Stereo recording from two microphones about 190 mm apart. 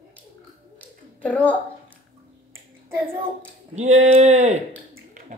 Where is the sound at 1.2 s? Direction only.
10° left (ahead or behind).